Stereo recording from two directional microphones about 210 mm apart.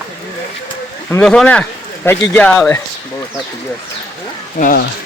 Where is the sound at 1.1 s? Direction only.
5° left (ahead or behind).